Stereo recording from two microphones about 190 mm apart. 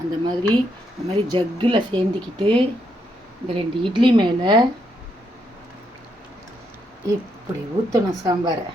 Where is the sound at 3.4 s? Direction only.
25° right (ahead or behind).